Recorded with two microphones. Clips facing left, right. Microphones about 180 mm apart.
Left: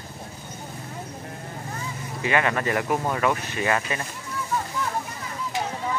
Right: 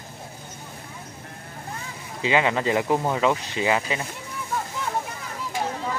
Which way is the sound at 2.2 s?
15° right (ahead or behind).